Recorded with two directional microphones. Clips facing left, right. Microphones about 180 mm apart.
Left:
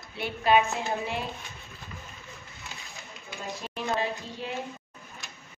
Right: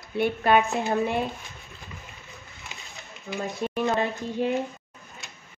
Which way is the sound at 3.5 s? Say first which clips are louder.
Right 5 dB; 55° right (ahead or behind).